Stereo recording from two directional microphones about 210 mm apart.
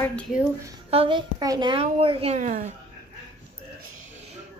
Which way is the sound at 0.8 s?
25° right (ahead or behind).